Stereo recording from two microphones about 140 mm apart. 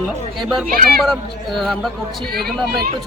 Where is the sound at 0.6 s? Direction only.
90° right.